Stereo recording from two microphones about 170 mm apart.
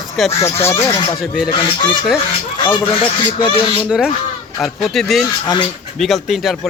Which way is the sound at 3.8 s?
5° right (ahead or behind).